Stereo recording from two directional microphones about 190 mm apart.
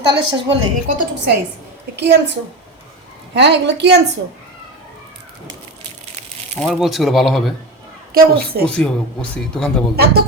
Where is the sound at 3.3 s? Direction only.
65° right (ahead or behind).